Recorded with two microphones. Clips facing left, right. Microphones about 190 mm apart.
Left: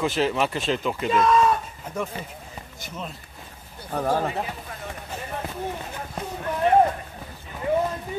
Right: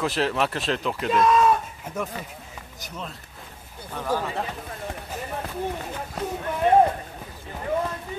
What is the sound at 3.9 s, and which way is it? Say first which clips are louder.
Speech: left 3 dB; 45° left (ahead or behind).